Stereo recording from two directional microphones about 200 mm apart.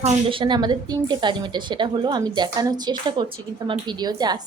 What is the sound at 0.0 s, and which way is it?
A woman's voice, 25° right (ahead or behind).